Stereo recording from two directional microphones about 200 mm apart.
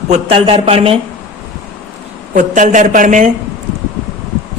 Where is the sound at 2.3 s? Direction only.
40° right (ahead or behind).